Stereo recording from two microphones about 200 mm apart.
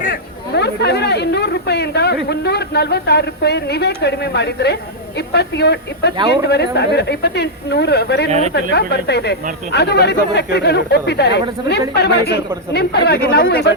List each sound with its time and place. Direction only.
0.0 s speech: 50° left (ahead or behind)
8.3 s speech: 35° right (ahead or behind)
8.7 s speech: 55° left (ahead or behind)